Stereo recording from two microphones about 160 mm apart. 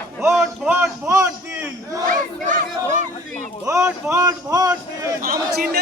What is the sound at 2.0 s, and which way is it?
Battle cry, 55° right (ahead or behind).